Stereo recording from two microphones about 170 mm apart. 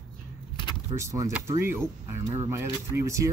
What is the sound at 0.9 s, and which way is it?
Speech, 15° right (ahead or behind).